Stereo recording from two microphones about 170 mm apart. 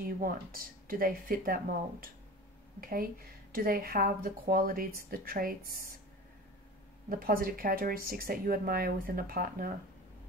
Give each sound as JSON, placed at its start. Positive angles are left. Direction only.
{"t": 0.0, "sound": "speech", "side_deg": -55}
{"t": 7.1, "sound": "speech", "side_deg": -60}